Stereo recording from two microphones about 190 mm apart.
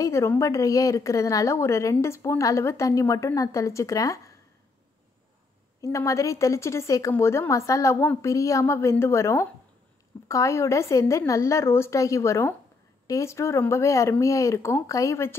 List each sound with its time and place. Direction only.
0.0 s a woman's voice: 15° left (ahead or behind)
5.8 s a woman's voice: 15° left (ahead or behind)